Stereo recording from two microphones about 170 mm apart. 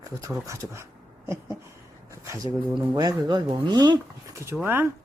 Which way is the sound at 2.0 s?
15° right (ahead or behind).